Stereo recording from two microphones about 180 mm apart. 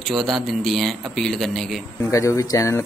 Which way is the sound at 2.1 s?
20° left (ahead or behind).